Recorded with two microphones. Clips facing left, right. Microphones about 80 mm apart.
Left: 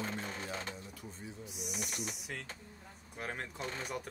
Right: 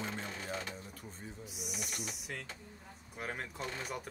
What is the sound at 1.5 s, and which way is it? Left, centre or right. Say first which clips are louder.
Speech: left 2 dB; centre.